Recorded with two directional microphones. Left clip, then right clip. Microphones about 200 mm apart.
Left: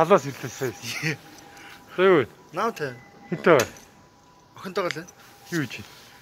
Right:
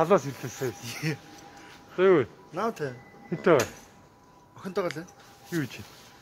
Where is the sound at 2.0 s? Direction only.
15° left (ahead or behind).